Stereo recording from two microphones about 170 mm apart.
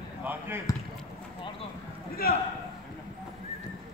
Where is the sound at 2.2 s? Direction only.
65° left (ahead or behind).